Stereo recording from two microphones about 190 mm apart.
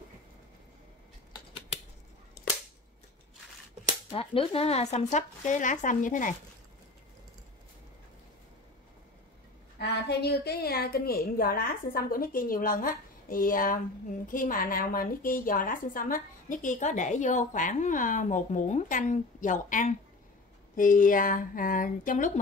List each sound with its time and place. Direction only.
1.3 s scissors: 30° left (ahead or behind)
4.1 s speech: 30° left (ahead or behind)
9.8 s a woman's voice: 60° left (ahead or behind); by 22.4 s 40° left (ahead or behind)